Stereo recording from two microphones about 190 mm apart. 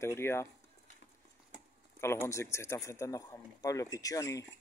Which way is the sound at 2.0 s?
15° left (ahead or behind).